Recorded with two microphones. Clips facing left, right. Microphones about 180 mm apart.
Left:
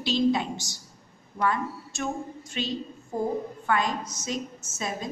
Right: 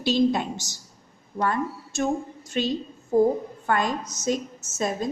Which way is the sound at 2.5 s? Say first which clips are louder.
Right 6 dB; 45° right (ahead or behind).